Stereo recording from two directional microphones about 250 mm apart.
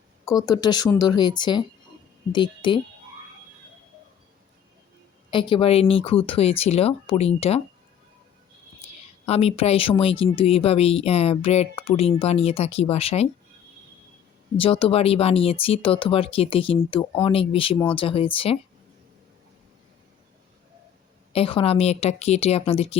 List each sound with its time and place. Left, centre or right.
0.3 s speech: centre
5.3 s speech: centre
9.2 s speech: left
14.6 s speech: left
21.3 s speech: left